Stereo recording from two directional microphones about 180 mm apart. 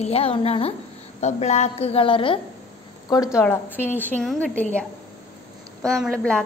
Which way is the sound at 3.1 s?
20° left (ahead or behind).